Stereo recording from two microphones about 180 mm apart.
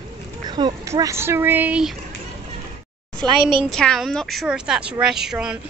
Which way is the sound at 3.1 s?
25° right (ahead or behind).